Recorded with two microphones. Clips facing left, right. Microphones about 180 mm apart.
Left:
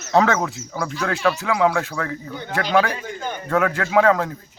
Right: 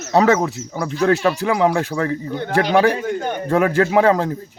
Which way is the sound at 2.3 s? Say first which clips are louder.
Right 3 dB; 60° right (ahead or behind).